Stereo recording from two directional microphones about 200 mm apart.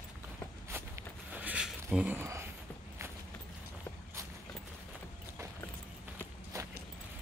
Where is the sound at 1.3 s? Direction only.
5° right (ahead or behind).